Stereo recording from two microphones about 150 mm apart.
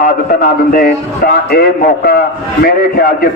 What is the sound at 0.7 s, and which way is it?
A man's voice, 75° left (ahead or behind).